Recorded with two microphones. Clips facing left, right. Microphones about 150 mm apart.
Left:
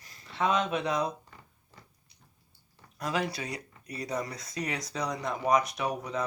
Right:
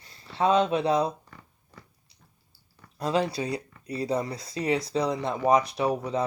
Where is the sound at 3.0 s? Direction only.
30° right (ahead or behind).